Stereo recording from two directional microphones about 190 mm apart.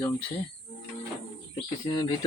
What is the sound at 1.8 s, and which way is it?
Speech, 20° left (ahead or behind).